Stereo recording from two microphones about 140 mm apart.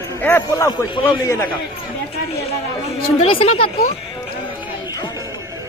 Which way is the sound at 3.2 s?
40° left (ahead or behind).